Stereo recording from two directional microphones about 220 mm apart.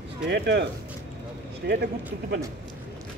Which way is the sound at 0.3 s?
50° right (ahead or behind).